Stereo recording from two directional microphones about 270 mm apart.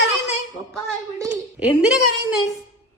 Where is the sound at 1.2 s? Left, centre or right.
Centre.